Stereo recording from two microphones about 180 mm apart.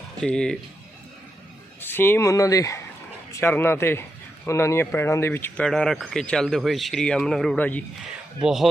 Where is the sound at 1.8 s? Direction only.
10° left (ahead or behind).